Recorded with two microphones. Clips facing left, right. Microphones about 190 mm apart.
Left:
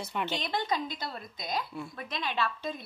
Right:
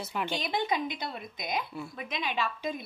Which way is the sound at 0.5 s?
15° right (ahead or behind).